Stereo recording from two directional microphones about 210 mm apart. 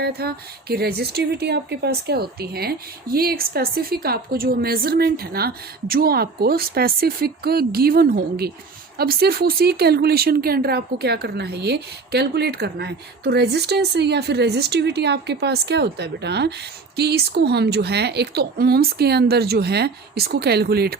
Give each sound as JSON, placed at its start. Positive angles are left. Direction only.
{"t": 0.0, "sound": "speech", "side_deg": -50}